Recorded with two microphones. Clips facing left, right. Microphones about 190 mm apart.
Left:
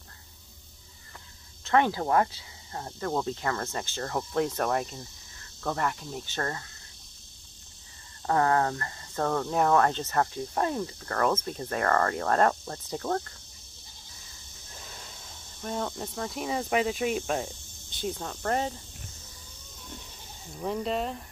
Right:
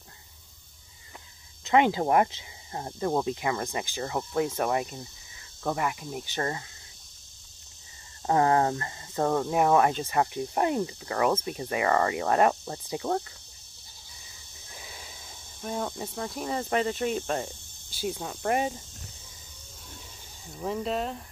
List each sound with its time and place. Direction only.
1.6 s speech: 15° right (ahead or behind)
8.3 s speech: 20° right (ahead or behind)
14.8 s a sound: 5° right (ahead or behind)
15.6 s speech: 5° right (ahead or behind)
20.4 s speech: centre (ahead or behind)